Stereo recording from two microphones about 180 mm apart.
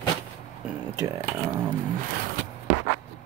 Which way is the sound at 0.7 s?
15° right (ahead or behind).